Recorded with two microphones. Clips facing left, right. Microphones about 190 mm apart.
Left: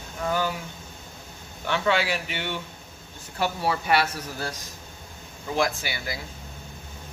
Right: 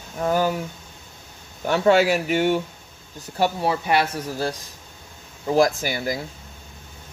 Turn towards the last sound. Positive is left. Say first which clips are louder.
# right 7 dB
turn(degrees=-45)  # may be behind; listen again after turning